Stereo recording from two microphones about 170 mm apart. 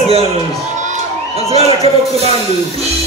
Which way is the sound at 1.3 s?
35° right (ahead or behind).